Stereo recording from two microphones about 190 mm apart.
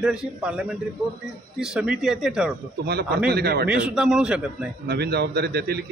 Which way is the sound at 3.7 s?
5° right (ahead or behind).